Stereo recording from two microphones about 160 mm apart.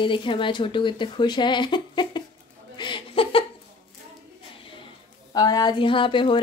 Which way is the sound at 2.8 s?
30° left (ahead or behind).